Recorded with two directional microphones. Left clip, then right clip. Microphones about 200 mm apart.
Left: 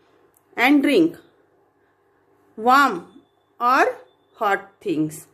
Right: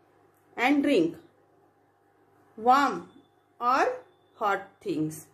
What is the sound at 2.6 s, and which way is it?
A woman's voice, 40° left (ahead or behind).